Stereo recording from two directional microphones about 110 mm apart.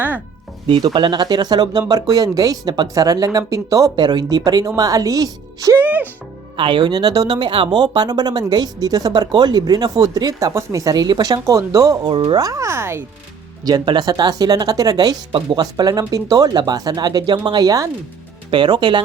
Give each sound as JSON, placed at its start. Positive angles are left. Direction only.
{"t": 0.9, "sound": "speech", "side_deg": -45}
{"t": 5.8, "sound": "speech", "side_deg": -15}
{"t": 6.6, "sound": "speech", "side_deg": -45}
{"t": 12.1, "sound": "speech", "side_deg": -50}
{"t": 12.4, "sound": "speech", "side_deg": -30}
{"t": 13.7, "sound": "speech", "side_deg": -40}
{"t": 15.3, "sound": "speech", "side_deg": -55}
{"t": 15.5, "sound": "speech", "side_deg": -35}